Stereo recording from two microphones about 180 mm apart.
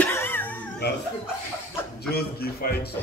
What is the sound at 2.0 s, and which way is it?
Speech, 60° left (ahead or behind).